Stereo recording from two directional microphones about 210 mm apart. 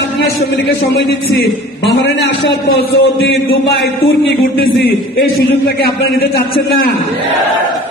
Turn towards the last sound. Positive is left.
turn(degrees=45)  # may be behind; listen again after turning